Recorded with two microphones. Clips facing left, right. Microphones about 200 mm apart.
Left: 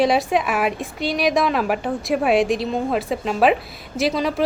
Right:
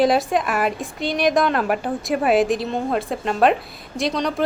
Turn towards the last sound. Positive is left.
turn(degrees=5)  # may be behind; listen again after turning